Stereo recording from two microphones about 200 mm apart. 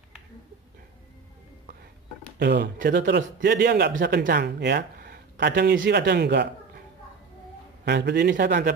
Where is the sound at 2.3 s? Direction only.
55° right (ahead or behind).